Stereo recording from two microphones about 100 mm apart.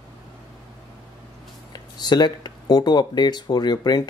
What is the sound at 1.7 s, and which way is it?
Speech, 45° left (ahead or behind).